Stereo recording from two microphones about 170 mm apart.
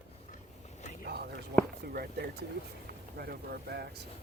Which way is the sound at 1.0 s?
70° right (ahead or behind).